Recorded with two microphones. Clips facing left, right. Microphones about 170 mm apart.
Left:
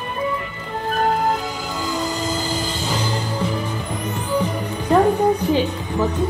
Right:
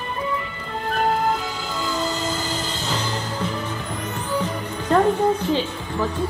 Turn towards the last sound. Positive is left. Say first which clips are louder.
# left 4 dB
turn(degrees=15)  # may be behind; listen again after turning